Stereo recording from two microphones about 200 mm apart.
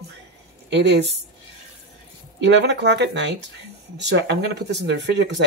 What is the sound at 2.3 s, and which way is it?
Speech, 60° right (ahead or behind).